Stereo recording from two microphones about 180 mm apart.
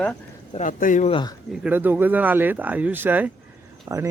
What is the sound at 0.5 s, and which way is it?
Speech, 45° left (ahead or behind).